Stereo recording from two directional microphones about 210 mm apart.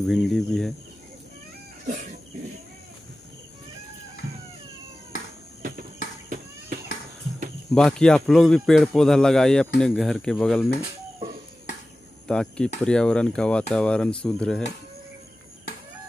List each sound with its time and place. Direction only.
0.0 s speech: centre (ahead or behind)
5.6 s cricket: 45° right (ahead or behind)
7.7 s speech: 5° left (ahead or behind)
12.3 s speech: 5° left (ahead or behind)